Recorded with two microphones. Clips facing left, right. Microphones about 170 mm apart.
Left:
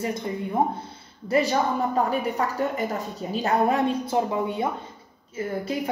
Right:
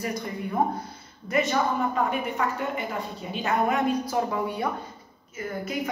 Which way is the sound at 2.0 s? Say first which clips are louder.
Left 2 dB; 35° left (ahead or behind).